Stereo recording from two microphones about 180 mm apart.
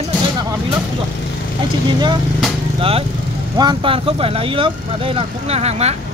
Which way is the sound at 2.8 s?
30° right (ahead or behind).